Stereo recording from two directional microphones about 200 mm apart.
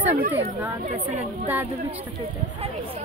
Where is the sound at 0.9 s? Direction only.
40° right (ahead or behind).